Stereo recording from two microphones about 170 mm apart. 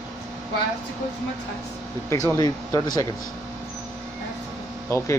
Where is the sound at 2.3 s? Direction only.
20° left (ahead or behind).